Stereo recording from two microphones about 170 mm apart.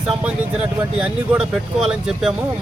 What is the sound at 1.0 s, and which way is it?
Speech, 5° right (ahead or behind).